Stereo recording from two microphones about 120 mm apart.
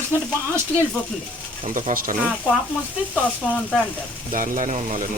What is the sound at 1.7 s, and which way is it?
Speech, 90° right.